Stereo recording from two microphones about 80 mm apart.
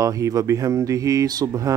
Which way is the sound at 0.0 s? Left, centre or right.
Right.